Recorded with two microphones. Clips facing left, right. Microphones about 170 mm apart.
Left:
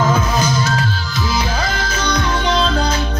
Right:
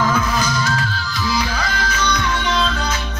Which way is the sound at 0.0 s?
20° left (ahead or behind).